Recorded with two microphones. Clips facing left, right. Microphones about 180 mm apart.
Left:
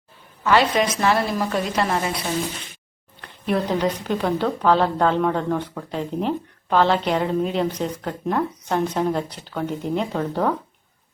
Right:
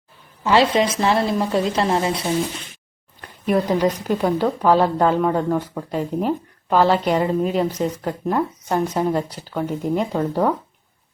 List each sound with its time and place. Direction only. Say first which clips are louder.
0.4 s a woman's voice: right 2 dB; 25° right (ahead or behind)
3.2 s a woman's voice: right 3 dB; 10° right (ahead or behind)